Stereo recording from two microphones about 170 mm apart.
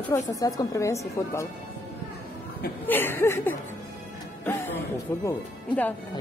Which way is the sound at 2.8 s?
10° left (ahead or behind).